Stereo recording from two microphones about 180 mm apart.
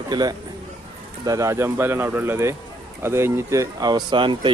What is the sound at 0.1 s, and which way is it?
A man's voice, 20° right (ahead or behind).